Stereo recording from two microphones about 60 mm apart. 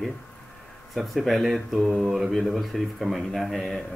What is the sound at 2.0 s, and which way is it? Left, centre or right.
Mantra, centre.